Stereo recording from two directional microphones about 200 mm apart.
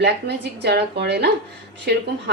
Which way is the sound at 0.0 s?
55° right (ahead or behind).